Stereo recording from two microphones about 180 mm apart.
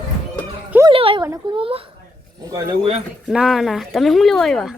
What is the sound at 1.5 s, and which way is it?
Speech, 30° right (ahead or behind).